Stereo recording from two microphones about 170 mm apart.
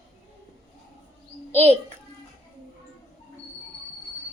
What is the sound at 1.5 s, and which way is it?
Speech, 10° left (ahead or behind).